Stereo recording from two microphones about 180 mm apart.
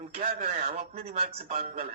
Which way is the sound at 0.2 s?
35° right (ahead or behind).